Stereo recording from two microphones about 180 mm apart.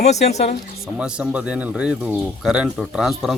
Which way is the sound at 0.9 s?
5° right (ahead or behind).